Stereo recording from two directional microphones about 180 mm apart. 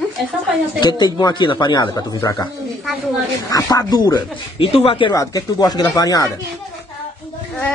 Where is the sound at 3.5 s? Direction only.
20° left (ahead or behind).